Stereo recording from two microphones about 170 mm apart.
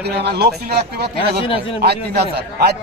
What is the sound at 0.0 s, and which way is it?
A man's voice, 75° right (ahead or behind).